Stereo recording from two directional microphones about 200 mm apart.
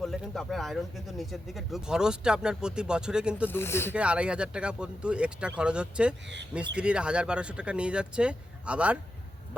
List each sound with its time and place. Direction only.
0.0 s speech: centre (ahead or behind)
3.4 s speech: 10° left (ahead or behind)
3.9 s speech: 5° right (ahead or behind)